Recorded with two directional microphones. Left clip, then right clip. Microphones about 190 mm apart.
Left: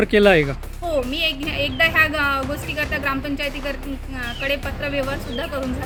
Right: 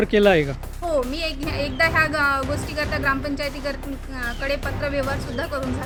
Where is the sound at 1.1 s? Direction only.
35° right (ahead or behind).